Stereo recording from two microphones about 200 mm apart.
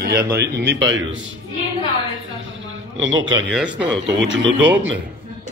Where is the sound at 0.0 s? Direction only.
50° right (ahead or behind).